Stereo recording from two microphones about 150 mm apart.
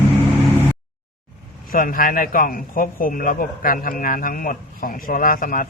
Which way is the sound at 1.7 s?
70° left (ahead or behind).